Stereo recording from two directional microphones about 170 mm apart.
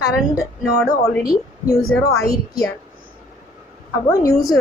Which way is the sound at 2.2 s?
20° left (ahead or behind).